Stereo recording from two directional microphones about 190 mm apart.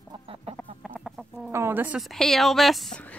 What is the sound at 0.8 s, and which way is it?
Chicken, centre (ahead or behind).